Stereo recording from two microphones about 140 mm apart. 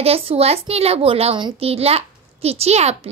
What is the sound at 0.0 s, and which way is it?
A child's voice, 45° right (ahead or behind).